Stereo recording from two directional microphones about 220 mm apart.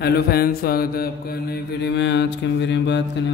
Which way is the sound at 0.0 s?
45° left (ahead or behind).